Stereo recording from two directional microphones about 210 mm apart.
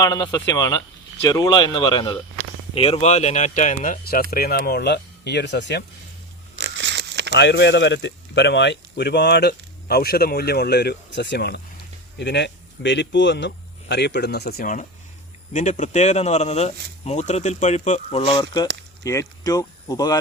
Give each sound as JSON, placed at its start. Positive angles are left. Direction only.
{"t": 0.0, "sound": "speech", "side_deg": 20}
{"t": 6.6, "sound": "a sound", "side_deg": -55}
{"t": 7.3, "sound": "speech", "side_deg": 55}